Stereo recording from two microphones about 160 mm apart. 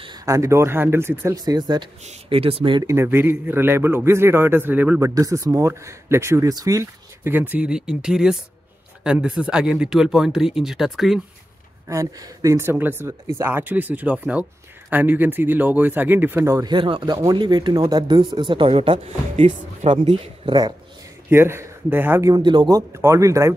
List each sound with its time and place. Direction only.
0.0 s speech: 25° right (ahead or behind)
1.4 s speech: 25° right (ahead or behind)
2.9 s speech: 15° right (ahead or behind)
5.0 s speech: 20° right (ahead or behind); by 11.2 s centre (ahead or behind)
11.9 s speech: 20° right (ahead or behind); by 20.2 s 40° right (ahead or behind)
20.4 s speech: 25° right (ahead or behind)
21.3 s speech: 15° right (ahead or behind)
22.3 s speech: 30° right (ahead or behind)